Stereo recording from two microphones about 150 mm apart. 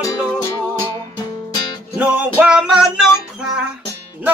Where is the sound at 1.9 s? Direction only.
10° right (ahead or behind).